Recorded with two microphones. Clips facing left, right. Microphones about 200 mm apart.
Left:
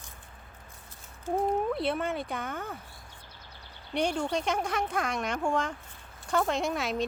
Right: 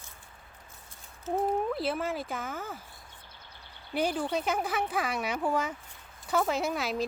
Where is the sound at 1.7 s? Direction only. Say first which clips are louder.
Left 1 dB; centre (ahead or behind).